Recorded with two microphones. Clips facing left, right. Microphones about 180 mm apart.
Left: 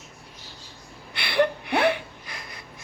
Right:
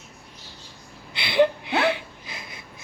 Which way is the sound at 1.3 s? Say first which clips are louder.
Right 2 dB; 25° right (ahead or behind).